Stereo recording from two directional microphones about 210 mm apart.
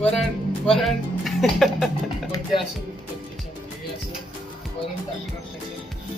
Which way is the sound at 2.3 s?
20° left (ahead or behind).